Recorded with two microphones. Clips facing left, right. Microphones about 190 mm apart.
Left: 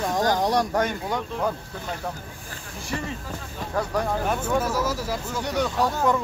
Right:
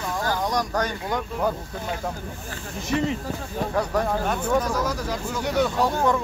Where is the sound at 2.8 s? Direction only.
20° right (ahead or behind).